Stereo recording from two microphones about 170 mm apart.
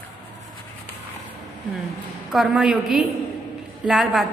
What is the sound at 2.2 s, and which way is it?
A woman's voice, centre (ahead or behind).